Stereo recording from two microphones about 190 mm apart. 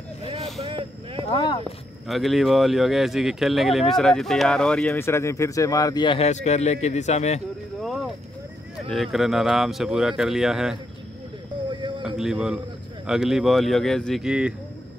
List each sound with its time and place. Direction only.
0.6 s vehicle: 25° right (ahead or behind)
1.3 s a sound: 25° left (ahead or behind)
2.0 s speech: centre (ahead or behind); by 7.4 s 35° left (ahead or behind)
7.8 s a sound: centre (ahead or behind)
8.9 s speech: centre (ahead or behind)
12.0 s a man's voice: 5° right (ahead or behind)